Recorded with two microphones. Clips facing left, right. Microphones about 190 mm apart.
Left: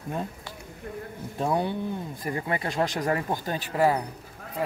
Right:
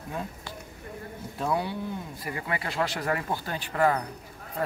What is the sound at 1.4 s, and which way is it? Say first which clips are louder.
Speech: left 3 dB; 20° left (ahead or behind).